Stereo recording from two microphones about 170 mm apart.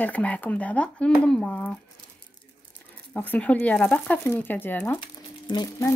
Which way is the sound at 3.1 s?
10° left (ahead or behind).